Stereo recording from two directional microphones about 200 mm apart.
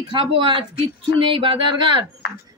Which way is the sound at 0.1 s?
25° right (ahead or behind).